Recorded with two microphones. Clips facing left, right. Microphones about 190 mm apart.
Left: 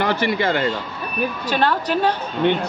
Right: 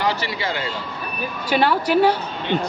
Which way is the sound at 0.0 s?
55° left (ahead or behind).